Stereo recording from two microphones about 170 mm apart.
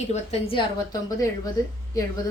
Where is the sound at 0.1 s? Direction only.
35° left (ahead or behind).